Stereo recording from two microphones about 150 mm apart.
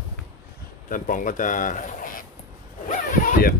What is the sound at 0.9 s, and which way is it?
Speech, 60° left (ahead or behind).